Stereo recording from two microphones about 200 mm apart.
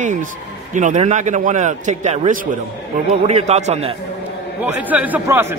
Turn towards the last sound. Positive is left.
turn(degrees=-10)  # may be behind; listen again after turning